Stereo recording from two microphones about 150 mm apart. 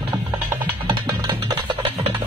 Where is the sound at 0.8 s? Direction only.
30° right (ahead or behind).